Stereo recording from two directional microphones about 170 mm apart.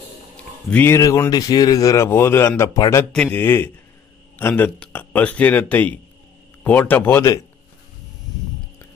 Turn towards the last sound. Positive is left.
turn(degrees=15)  # may be behind; listen again after turning